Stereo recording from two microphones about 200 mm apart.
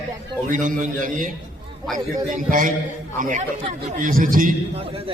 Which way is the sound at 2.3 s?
40° right (ahead or behind).